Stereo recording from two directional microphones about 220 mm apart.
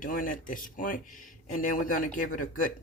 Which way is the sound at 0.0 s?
40° left (ahead or behind).